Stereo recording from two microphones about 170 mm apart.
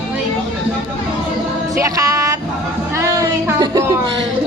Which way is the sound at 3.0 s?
15° right (ahead or behind).